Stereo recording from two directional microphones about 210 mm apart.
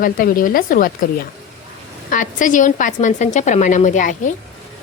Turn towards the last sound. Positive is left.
turn(degrees=35)  # may be behind; listen again after turning